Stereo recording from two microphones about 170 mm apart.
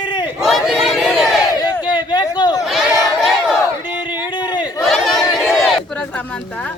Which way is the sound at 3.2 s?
Centre (ahead or behind).